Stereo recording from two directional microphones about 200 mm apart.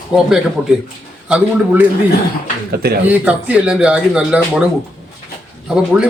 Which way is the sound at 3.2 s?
5° right (ahead or behind).